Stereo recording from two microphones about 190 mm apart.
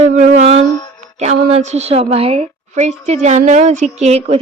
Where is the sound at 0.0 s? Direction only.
40° right (ahead or behind).